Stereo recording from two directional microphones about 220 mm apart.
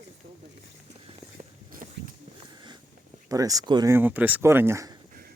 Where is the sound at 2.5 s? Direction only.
20° right (ahead or behind).